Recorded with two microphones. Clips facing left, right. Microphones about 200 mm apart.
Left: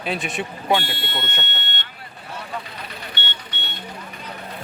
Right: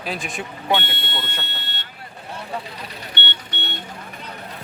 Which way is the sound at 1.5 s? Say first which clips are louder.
Left 2 dB; 35° right (ahead or behind).